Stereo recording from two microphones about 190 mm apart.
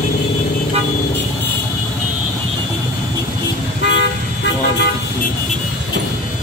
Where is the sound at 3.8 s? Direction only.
65° left (ahead or behind).